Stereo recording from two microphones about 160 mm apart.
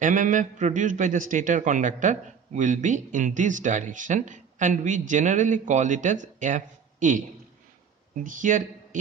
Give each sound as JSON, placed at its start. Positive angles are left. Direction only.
{"t": 0.0, "sound": "speech", "side_deg": -55}
{"t": 8.2, "sound": "speech", "side_deg": -55}